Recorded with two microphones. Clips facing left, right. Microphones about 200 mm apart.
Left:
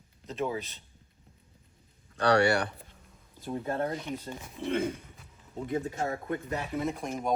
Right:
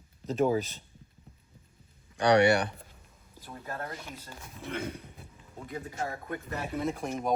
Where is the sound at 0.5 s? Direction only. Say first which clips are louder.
Right 6 dB; centre (ahead or behind).